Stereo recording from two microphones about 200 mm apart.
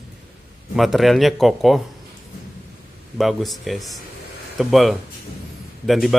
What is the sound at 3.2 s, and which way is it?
A man's voice, centre (ahead or behind).